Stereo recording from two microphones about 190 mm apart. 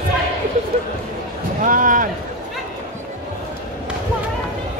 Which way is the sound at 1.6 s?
45° right (ahead or behind).